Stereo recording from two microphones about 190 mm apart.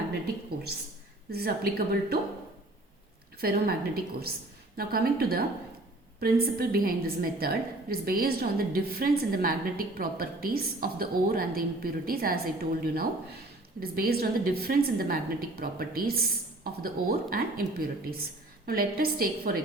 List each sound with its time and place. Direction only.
1.3 s a woman's voice: 55° right (ahead or behind)
3.4 s a woman's voice: 50° right (ahead or behind)